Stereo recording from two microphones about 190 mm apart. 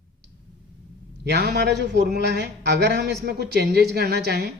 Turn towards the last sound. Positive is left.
turn(degrees=-55)  # may be behind; listen again after turning